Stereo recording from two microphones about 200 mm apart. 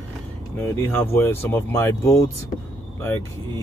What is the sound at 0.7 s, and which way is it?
Speech, 10° left (ahead or behind).